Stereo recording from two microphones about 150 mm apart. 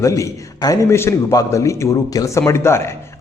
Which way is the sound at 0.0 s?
20° left (ahead or behind).